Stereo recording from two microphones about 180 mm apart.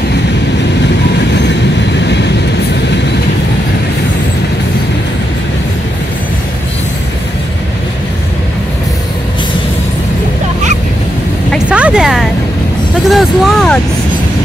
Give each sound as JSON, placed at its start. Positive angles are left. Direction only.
{"t": 1.3, "sound": "train", "side_deg": 75}
{"t": 11.5, "sound": "vehicle", "side_deg": -5}
{"t": 13.1, "sound": "speech", "side_deg": 0}